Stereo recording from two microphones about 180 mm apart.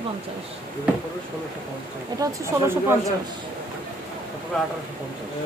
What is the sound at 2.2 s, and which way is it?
Speech, 15° right (ahead or behind).